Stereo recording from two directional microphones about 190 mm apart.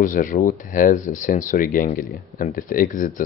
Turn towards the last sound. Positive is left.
turn(degrees=45)  # may be behind; listen again after turning